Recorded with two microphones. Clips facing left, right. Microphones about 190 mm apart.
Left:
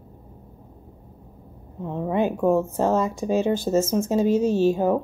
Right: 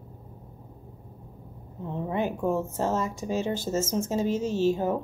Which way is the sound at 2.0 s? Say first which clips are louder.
Left 6 dB; 20° left (ahead or behind).